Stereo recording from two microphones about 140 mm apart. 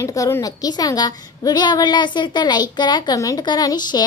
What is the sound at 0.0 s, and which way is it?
A woman's voice, 20° left (ahead or behind).